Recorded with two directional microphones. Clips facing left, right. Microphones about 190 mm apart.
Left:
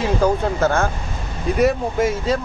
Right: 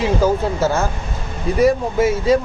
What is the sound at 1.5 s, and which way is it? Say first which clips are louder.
Speech: right 3 dB; centre (ahead or behind).